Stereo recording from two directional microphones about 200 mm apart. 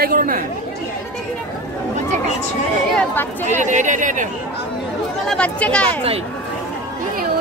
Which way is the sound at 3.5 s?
40° right (ahead or behind).